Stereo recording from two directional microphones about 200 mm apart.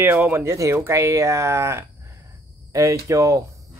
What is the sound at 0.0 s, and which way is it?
Speech, 10° right (ahead or behind).